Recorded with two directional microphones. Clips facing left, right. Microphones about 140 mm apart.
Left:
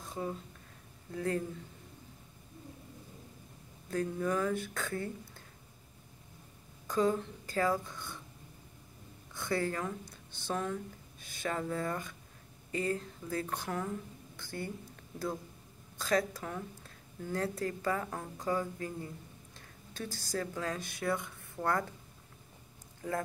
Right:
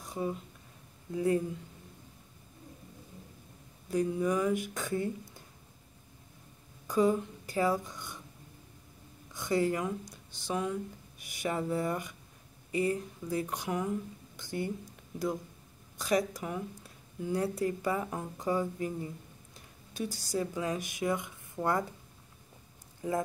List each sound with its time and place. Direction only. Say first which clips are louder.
0.0 s a sound: right 3 dB; 15° right (ahead or behind)
1.1 s speech: right 5 dB; 15° right (ahead or behind)
3.9 s speech: right 3 dB; 15° right (ahead or behind)
6.9 s speech: right 3 dB; 15° right (ahead or behind)
9.3 s speech: right 4 dB; 20° right (ahead or behind)
16.0 s speech: right 2 dB; 20° right (ahead or behind)
23.0 s speech: right 4 dB; 20° right (ahead or behind)